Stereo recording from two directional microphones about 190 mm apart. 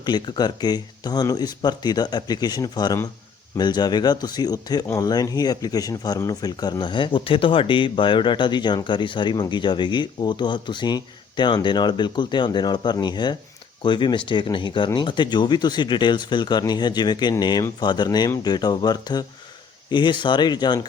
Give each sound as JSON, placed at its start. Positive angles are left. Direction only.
{"t": 0.0, "sound": "speech", "side_deg": 20}